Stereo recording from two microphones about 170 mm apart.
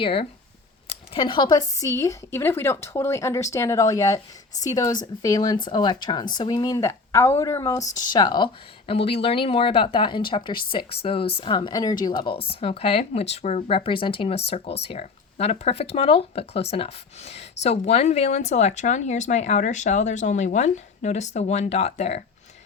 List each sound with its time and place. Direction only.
0.0 s speech: 35° left (ahead or behind)
0.9 s a sound: 30° left (ahead or behind)
1.8 s speech: 20° left (ahead or behind); by 22.2 s 40° left (ahead or behind)